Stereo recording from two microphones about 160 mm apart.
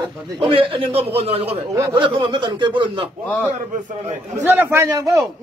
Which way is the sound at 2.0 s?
30° right (ahead or behind).